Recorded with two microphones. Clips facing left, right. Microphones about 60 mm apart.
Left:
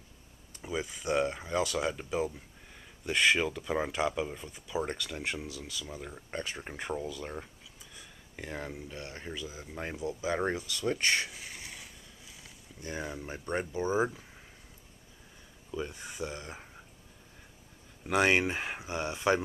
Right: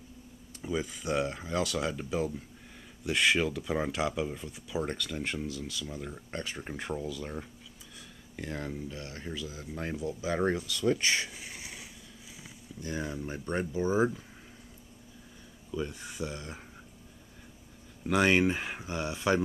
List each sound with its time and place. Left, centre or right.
0.6 s speech: centre
10.6 s speech: centre
11.2 s a sound: centre
12.8 s speech: centre
13.7 s speech: centre
15.7 s speech: centre
18.0 s speech: centre